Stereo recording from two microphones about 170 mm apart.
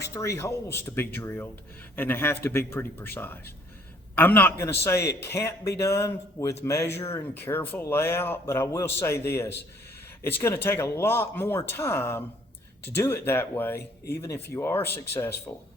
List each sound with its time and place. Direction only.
0.0 s speech: 15° left (ahead or behind)